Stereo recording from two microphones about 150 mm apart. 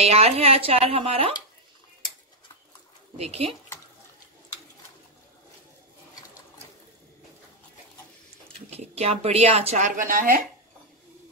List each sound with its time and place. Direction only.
0.0 s speech: 45° right (ahead or behind)
3.2 s speech: 45° right (ahead or behind)
8.6 s speech: 45° right (ahead or behind)
9.9 s speech: 65° right (ahead or behind)